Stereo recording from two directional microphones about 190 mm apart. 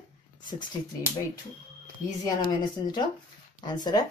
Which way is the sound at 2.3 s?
20° left (ahead or behind).